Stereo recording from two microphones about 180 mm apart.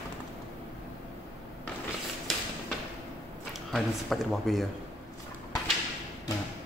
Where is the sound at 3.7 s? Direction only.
Centre (ahead or behind).